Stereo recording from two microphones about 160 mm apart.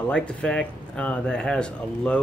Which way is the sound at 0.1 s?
5° left (ahead or behind).